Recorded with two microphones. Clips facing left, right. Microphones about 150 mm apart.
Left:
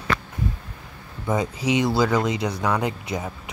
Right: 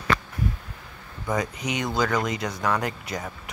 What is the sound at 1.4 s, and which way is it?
Speech, 25° left (ahead or behind).